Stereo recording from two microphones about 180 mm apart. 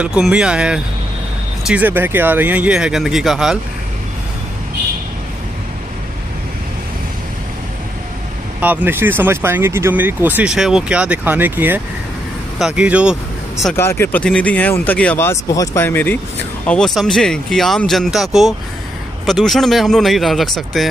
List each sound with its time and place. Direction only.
0.0 s speech: 5° right (ahead or behind)
8.5 s speech: 10° right (ahead or behind)
13.7 s speech: 15° left (ahead or behind)